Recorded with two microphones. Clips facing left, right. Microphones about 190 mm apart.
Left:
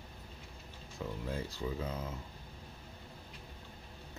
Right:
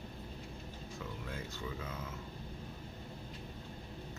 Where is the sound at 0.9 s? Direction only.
35° left (ahead or behind).